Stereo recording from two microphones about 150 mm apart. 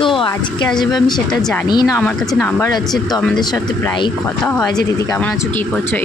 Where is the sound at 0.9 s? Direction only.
25° left (ahead or behind).